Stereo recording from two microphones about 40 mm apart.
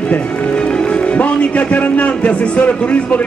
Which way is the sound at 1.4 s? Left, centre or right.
Left.